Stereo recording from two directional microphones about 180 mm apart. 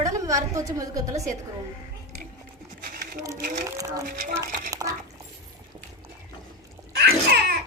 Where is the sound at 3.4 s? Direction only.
45° right (ahead or behind).